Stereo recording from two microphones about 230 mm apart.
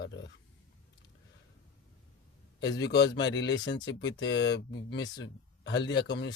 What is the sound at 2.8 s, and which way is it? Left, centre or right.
Speech, left.